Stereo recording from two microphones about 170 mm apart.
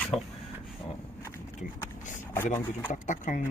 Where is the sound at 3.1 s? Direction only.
50° left (ahead or behind).